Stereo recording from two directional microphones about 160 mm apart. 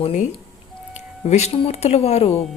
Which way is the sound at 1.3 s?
40° left (ahead or behind).